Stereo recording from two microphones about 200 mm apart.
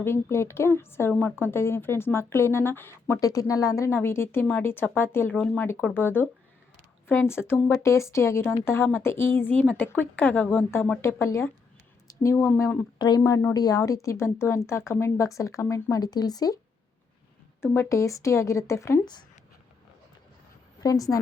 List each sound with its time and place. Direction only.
0.0 s a woman's voice: 10° left (ahead or behind)
17.6 s a woman's voice: 15° left (ahead or behind)
20.8 s a woman's voice: 15° left (ahead or behind)